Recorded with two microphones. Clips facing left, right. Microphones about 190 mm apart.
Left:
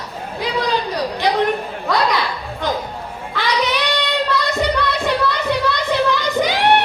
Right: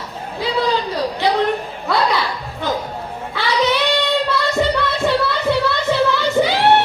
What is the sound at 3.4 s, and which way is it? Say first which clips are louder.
Child singing: right 2 dB; 15° left (ahead or behind).